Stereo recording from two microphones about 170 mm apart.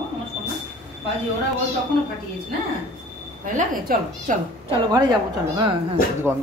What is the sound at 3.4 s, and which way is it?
Speech, 55° right (ahead or behind).